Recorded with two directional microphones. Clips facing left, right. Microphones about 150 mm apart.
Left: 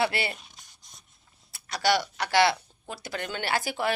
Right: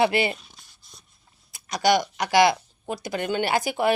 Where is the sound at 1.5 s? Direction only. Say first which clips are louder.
Right 4 dB; 15° right (ahead or behind).